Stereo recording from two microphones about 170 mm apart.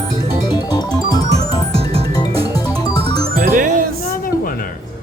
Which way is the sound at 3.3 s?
55° right (ahead or behind).